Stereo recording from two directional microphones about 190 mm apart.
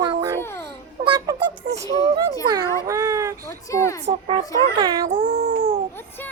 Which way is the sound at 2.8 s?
15° right (ahead or behind).